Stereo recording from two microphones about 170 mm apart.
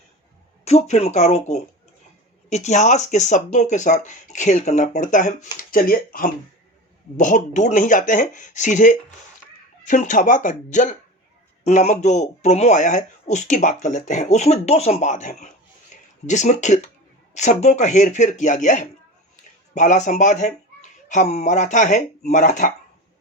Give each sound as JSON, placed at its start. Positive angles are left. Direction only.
{"t": 0.6, "sound": "speech", "side_deg": 40}